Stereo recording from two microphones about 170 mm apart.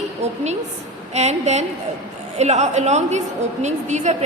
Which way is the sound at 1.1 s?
40° right (ahead or behind).